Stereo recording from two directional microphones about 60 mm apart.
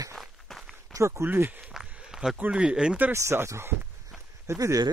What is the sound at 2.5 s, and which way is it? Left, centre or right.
Speech, centre.